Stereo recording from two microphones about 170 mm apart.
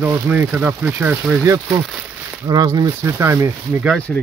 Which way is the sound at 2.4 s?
25° right (ahead or behind).